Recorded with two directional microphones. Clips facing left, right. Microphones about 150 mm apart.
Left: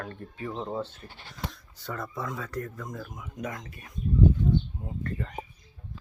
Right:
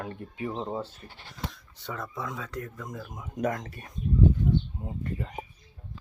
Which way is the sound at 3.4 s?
45° right (ahead or behind).